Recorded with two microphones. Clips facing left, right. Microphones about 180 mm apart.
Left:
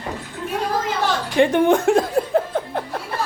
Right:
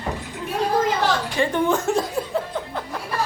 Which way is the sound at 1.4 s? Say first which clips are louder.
Left 7 dB; 60° left (ahead or behind).